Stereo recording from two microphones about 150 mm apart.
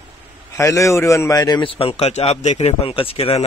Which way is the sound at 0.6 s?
20° left (ahead or behind).